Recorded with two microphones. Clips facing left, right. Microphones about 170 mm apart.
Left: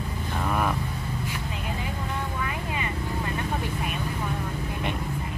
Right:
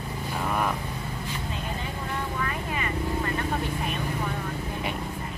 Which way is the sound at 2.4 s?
15° left (ahead or behind).